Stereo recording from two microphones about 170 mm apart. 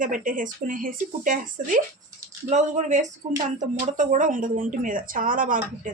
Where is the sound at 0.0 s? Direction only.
50° right (ahead or behind).